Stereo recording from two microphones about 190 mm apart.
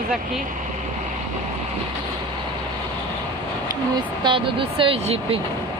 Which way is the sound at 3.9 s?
25° right (ahead or behind).